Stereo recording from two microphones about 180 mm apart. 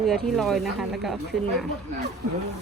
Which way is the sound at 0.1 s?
Centre (ahead or behind).